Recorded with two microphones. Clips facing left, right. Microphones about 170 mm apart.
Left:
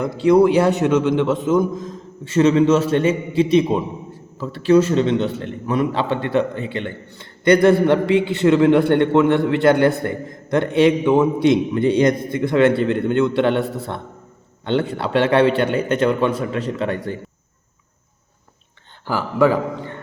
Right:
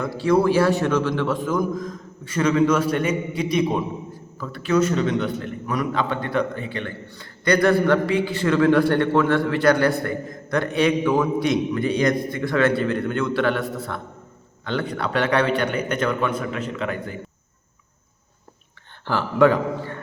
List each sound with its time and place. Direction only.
0.0 s a man's voice: 20° left (ahead or behind)
19.0 s speech: 10° left (ahead or behind)